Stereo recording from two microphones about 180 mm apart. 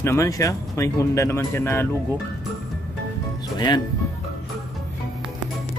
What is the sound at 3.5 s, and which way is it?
Speech, 25° left (ahead or behind).